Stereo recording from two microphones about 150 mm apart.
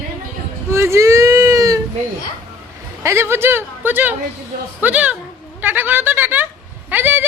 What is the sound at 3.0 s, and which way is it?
Speech, 15° right (ahead or behind).